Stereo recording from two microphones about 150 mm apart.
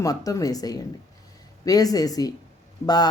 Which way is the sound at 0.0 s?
25° left (ahead or behind).